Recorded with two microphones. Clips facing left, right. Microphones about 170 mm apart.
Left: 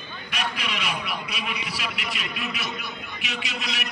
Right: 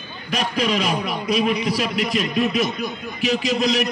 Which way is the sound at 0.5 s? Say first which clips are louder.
Right 10 dB; 40° right (ahead or behind).